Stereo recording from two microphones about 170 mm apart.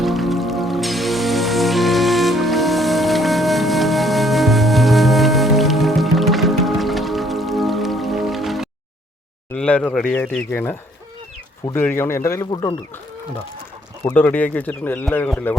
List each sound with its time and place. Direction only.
0.0 s music: centre (ahead or behind)
9.5 s speech: 10° left (ahead or behind); by 12.7 s 25° left (ahead or behind)
14.0 s speech: 10° left (ahead or behind)